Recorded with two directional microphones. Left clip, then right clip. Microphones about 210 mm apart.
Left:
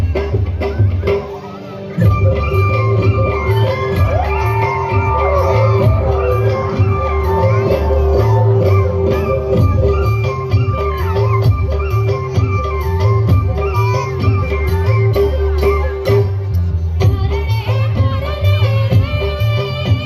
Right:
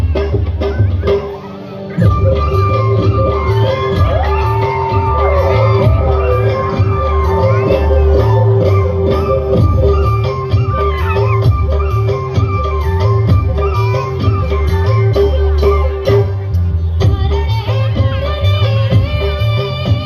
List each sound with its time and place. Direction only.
0.6 s music: 25° left (ahead or behind)
3.2 s music: 50° left (ahead or behind)
4.6 s music: 20° left (ahead or behind)
5.2 s music: 55° left (ahead or behind)
5.8 s music: 20° left (ahead or behind)
18.6 s music: 25° left (ahead or behind)